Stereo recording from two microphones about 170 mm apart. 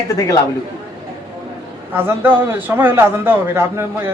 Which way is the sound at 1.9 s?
10° right (ahead or behind).